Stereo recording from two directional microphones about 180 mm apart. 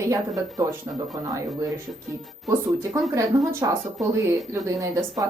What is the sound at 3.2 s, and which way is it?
Speech, 15° right (ahead or behind).